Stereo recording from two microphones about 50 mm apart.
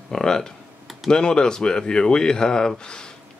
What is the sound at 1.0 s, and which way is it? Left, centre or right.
Speech, centre.